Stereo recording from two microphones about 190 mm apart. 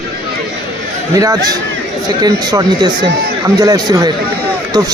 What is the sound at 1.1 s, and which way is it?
A man's voice, 20° right (ahead or behind).